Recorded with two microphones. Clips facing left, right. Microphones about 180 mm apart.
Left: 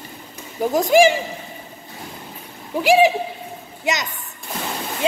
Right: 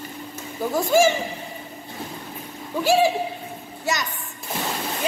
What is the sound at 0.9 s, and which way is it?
Speech, 15° left (ahead or behind).